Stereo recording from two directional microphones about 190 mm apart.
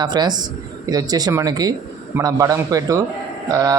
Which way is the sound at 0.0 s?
20° right (ahead or behind).